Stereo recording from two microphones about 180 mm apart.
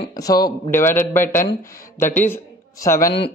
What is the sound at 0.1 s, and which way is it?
A man's voice, 20° left (ahead or behind).